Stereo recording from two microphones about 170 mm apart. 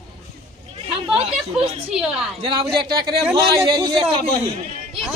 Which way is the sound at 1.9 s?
5° right (ahead or behind).